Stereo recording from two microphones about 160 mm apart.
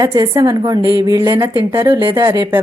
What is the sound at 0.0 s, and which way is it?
Speech, 25° right (ahead or behind).